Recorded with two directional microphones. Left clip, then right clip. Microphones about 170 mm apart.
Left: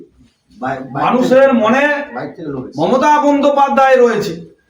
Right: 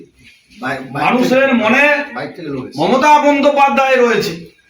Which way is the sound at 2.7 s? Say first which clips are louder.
Right 1 dB; 15° left (ahead or behind).